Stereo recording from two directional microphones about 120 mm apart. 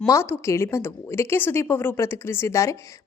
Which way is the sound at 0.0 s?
25° left (ahead or behind).